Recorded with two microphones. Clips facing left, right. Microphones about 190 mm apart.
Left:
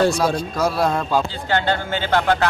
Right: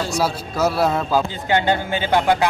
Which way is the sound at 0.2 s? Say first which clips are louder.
Even; 5° right (ahead or behind).